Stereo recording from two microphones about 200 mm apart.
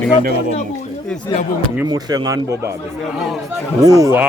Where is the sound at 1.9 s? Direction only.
20° right (ahead or behind).